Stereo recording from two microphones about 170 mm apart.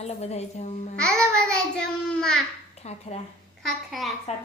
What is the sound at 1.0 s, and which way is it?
A child's voice, 5° left (ahead or behind).